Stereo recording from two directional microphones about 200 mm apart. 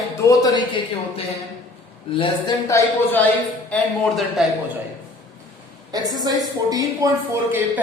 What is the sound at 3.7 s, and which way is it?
Speech, centre (ahead or behind).